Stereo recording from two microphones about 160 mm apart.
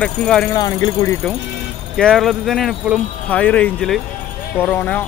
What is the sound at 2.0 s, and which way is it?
Speech, centre (ahead or behind).